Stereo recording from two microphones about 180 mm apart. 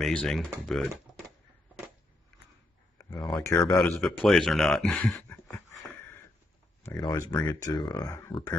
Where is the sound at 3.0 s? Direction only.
15° left (ahead or behind).